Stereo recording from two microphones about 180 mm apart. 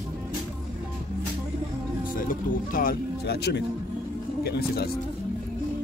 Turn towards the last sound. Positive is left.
turn(degrees=60)  # may be behind; listen again after turning